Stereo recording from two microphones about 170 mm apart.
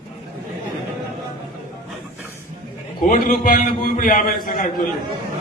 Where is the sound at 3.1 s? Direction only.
55° left (ahead or behind).